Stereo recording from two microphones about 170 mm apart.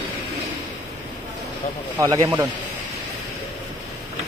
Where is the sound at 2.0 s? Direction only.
20° right (ahead or behind).